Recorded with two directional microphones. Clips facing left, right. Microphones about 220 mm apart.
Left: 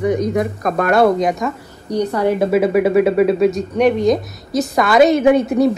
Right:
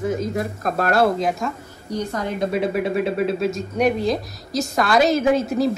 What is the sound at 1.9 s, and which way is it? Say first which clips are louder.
Speech: left 8 dB; 65° left (ahead or behind).